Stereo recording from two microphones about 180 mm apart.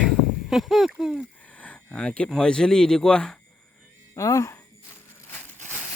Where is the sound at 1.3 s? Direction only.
10° left (ahead or behind).